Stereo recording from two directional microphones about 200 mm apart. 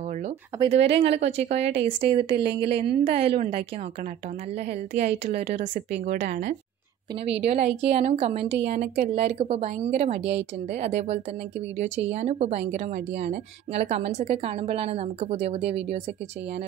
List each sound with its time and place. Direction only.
0.6 s a woman's voice: 30° right (ahead or behind)
4.6 s a woman's voice: 35° right (ahead or behind)
6.0 s a woman's voice: 45° right (ahead or behind)
8.7 s speech: 55° right (ahead or behind)
9.0 s a woman's voice: 30° right (ahead or behind)